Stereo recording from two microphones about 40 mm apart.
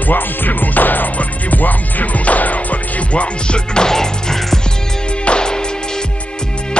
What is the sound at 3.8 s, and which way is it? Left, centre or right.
Music, centre.